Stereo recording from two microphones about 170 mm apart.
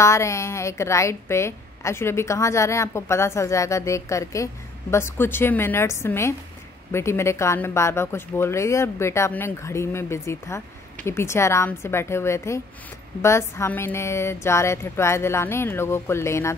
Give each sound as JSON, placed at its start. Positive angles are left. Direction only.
{"t": 0.0, "sound": "a woman's voice", "side_deg": 15}